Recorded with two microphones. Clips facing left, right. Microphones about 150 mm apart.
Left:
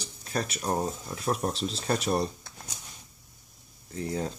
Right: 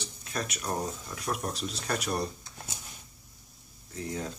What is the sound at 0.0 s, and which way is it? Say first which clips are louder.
Speech: left 3 dB; 40° left (ahead or behind).